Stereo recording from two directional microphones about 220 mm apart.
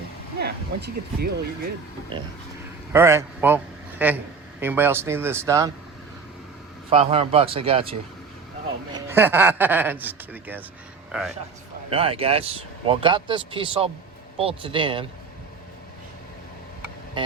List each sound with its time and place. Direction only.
0.3 s speech: 45° right (ahead or behind)
2.9 s a man's voice: 10° right (ahead or behind)
6.9 s speech: 25° right (ahead or behind)
8.9 s a man's voice: 15° right (ahead or behind)
11.9 s speech: 25° right (ahead or behind)